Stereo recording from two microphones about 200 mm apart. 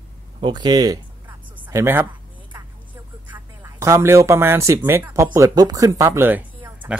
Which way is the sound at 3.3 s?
10° right (ahead or behind).